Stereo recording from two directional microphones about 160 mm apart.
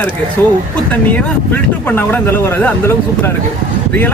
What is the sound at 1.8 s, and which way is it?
Speech, 15° left (ahead or behind).